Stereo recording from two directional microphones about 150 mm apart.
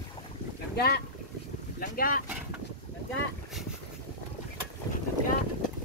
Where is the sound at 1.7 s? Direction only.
75° left (ahead or behind).